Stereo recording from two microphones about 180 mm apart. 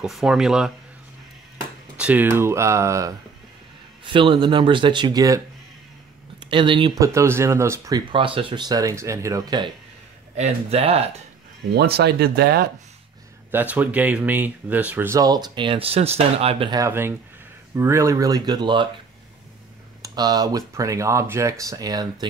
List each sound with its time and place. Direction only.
0.0 s speech: centre (ahead or behind)
2.0 s speech: 10° right (ahead or behind)
4.0 s speech: 30° right (ahead or behind)
6.5 s speech: 25° right (ahead or behind)
7.1 s speech: 15° right (ahead or behind)
10.3 s speech: 35° right (ahead or behind)
11.7 s speech: 65° right (ahead or behind)
13.5 s speech: 10° right (ahead or behind); by 16.8 s 30° right (ahead or behind)
16.8 s speech: 15° right (ahead or behind)
20.0 s speech: 20° right (ahead or behind)